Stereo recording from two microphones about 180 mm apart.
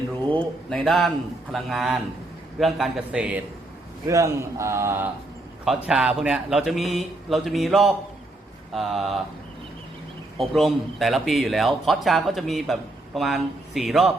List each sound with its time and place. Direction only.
0.3 s a man's voice: centre (ahead or behind)
4.0 s a man's voice: 15° right (ahead or behind)
5.6 s a man's voice: 5° right (ahead or behind)
10.3 s a man's voice: centre (ahead or behind)